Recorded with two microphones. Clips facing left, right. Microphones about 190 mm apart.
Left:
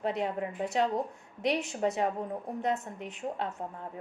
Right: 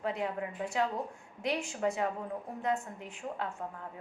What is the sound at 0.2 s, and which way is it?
A woman's voice, 20° left (ahead or behind).